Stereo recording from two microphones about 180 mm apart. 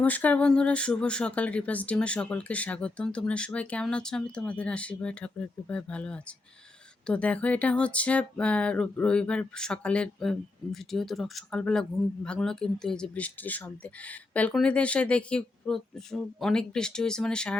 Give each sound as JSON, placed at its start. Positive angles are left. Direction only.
{"t": 0.0, "sound": "speech", "side_deg": 10}